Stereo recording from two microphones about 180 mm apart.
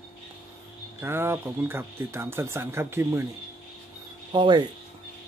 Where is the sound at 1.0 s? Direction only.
15° right (ahead or behind).